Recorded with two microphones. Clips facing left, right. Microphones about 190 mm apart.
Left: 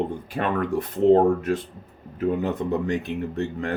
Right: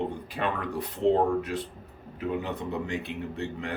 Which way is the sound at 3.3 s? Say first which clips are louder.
Left 6 dB; 45° left (ahead or behind).